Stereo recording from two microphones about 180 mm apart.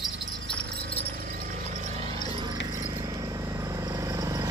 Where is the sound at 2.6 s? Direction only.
20° right (ahead or behind).